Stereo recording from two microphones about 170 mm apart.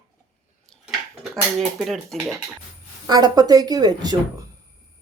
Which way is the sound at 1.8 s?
Centre (ahead or behind).